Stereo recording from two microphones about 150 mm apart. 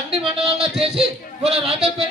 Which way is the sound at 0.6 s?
Centre (ahead or behind).